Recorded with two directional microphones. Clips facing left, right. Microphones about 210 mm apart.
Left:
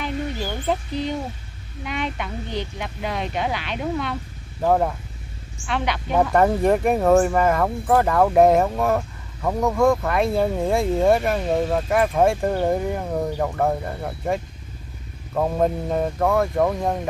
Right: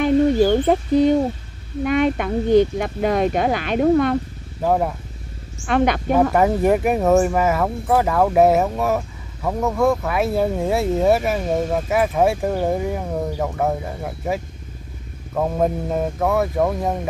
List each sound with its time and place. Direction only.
0.0 s bird: 50° right (ahead or behind)
1.8 s speech: 50° right (ahead or behind)
4.6 s speech: 5° right (ahead or behind)
5.7 s speech: 50° right (ahead or behind)
6.3 s speech: 5° right (ahead or behind)